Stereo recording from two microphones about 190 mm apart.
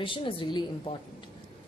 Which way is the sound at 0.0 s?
25° left (ahead or behind).